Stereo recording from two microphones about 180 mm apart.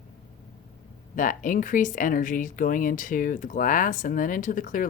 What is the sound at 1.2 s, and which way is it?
Speech, 45° left (ahead or behind).